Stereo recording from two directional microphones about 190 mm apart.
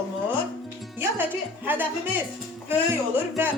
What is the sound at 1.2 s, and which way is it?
Speech, 10° right (ahead or behind).